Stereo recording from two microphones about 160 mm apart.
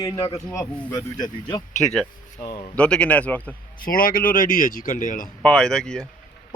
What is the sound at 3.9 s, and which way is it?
Speech, 60° left (ahead or behind).